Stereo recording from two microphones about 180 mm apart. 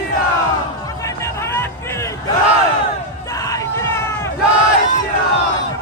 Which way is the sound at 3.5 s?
15° left (ahead or behind).